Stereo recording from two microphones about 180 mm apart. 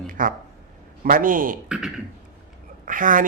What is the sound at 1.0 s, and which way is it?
Speech, 50° right (ahead or behind).